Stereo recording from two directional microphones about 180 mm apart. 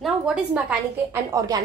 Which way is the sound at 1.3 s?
20° right (ahead or behind).